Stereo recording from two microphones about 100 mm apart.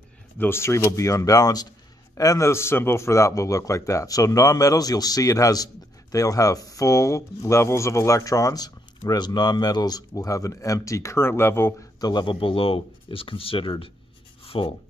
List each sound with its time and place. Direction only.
0.4 s speech: 25° left (ahead or behind)
12.0 s speech: 45° left (ahead or behind); by 13.8 s 65° left (ahead or behind)
14.4 s writing: 70° left (ahead or behind)